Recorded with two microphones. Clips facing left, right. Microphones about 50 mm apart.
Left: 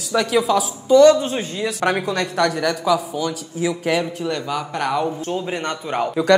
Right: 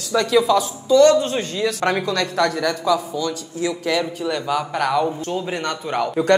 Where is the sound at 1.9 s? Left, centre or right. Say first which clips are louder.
Left 3 dB; left.